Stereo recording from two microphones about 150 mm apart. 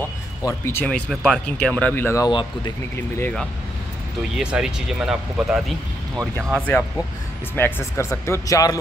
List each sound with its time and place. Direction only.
0.4 s speech: 20° left (ahead or behind)
0.8 s speech: 5° left (ahead or behind)
2.2 s speech: 30° left (ahead or behind)
3.2 s speech: 10° left (ahead or behind)
4.4 s speech: 5° right (ahead or behind)
7.5 s speech: 15° left (ahead or behind)